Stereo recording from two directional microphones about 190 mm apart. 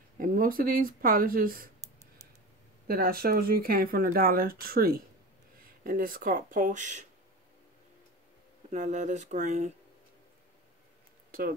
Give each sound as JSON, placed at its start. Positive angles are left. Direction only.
{"t": 0.2, "sound": "speech", "side_deg": -45}
{"t": 2.9, "sound": "speech", "side_deg": -50}
{"t": 8.7, "sound": "speech", "side_deg": -40}